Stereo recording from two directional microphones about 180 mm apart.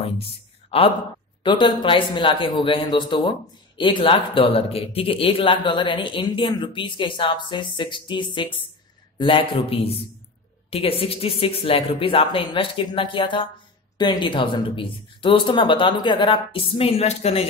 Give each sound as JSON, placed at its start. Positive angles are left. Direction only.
{"t": 0.7, "sound": "speech", "side_deg": 30}